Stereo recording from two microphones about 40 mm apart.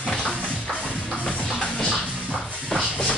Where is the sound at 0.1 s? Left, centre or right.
Centre.